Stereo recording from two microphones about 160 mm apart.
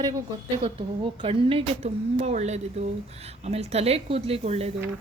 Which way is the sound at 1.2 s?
35° right (ahead or behind).